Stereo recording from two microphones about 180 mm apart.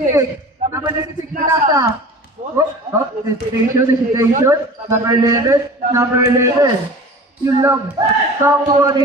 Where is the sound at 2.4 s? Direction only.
40° right (ahead or behind).